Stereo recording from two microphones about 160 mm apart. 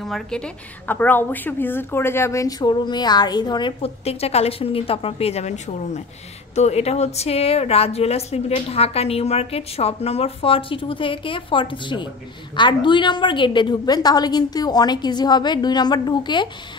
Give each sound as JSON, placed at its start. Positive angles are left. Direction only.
{"t": 0.0, "sound": "a woman's voice", "side_deg": 5}
{"t": 6.5, "sound": "a woman's voice", "side_deg": 40}